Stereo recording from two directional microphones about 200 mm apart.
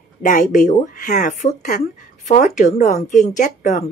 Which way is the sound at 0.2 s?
40° left (ahead or behind).